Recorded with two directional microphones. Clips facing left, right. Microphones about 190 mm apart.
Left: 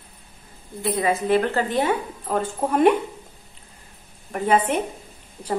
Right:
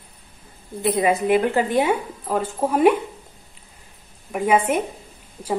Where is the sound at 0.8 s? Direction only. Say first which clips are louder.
Right 3 dB; 20° right (ahead or behind).